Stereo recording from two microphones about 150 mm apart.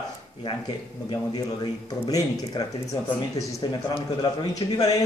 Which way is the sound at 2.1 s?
25° left (ahead or behind).